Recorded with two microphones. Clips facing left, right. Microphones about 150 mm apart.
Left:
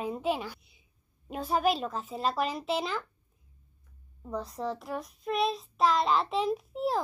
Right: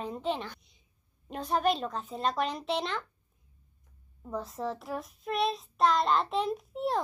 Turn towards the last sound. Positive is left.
turn(degrees=0)  # may be behind; listen again after turning